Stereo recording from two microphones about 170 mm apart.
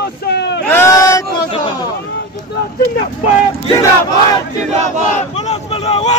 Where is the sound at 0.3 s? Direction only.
80° left.